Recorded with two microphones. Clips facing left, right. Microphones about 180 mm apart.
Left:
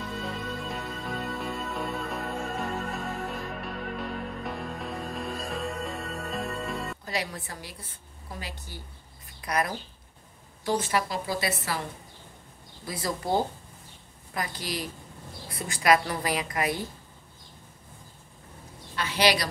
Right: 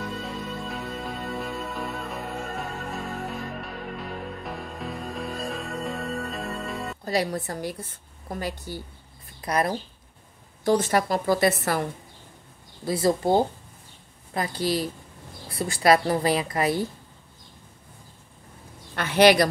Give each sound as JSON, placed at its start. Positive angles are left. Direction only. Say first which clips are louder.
{"t": 0.7, "sound": "music", "louder": "right 2 dB", "side_deg": 0}
{"t": 7.1, "sound": "a woman's voice", "louder": "right 11 dB", "side_deg": -40}
{"t": 9.4, "sound": "speech", "louder": "right 4 dB", "side_deg": -30}
{"t": 10.6, "sound": "a woman's voice", "louder": "right 6 dB", "side_deg": -45}
{"t": 12.8, "sound": "a woman's voice", "louder": "right 9 dB", "side_deg": -30}
{"t": 18.9, "sound": "a woman's voice", "louder": "right 8 dB", "side_deg": -55}